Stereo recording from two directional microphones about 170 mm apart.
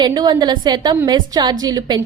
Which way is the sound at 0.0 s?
25° right (ahead or behind).